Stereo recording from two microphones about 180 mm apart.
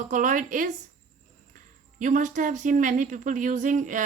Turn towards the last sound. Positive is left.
turn(degrees=-45)  # may be behind; listen again after turning